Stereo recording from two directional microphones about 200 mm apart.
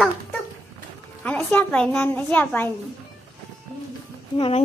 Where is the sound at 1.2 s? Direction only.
5° left (ahead or behind).